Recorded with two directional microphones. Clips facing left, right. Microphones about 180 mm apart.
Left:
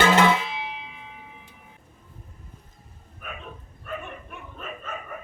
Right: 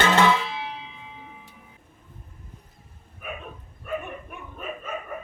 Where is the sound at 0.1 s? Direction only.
15° left (ahead or behind).